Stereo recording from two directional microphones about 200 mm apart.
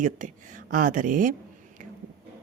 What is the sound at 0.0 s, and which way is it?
A woman's voice, 40° right (ahead or behind).